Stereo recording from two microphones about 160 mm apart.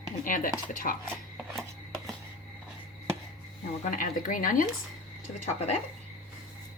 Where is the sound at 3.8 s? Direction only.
55° left (ahead or behind).